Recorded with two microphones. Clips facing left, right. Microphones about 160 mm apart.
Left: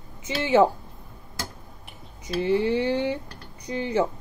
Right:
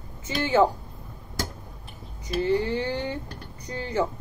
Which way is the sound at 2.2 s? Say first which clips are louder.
Left 1 dB; 15° left (ahead or behind).